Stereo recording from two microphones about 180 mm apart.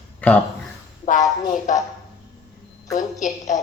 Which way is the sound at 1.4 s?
45° left (ahead or behind).